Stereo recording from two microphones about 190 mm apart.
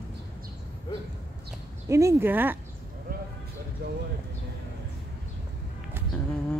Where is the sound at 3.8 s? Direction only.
60° right (ahead or behind).